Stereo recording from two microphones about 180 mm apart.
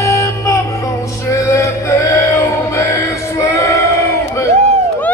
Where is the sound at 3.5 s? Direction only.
15° left (ahead or behind).